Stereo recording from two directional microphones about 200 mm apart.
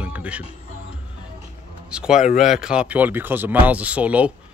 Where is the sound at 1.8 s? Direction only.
5° right (ahead or behind).